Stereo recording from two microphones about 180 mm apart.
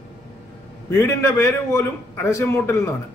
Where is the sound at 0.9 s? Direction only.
15° left (ahead or behind).